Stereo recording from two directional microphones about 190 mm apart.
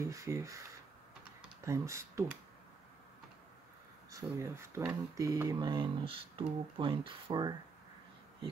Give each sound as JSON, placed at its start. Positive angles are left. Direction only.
{"t": 0.1, "sound": "speech", "side_deg": -15}
{"t": 4.1, "sound": "speech", "side_deg": -15}